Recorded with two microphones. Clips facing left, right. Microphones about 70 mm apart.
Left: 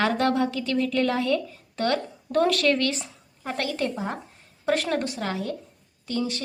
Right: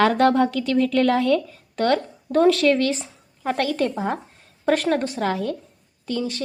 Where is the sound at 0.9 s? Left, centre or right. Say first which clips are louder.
Right 5 dB; right.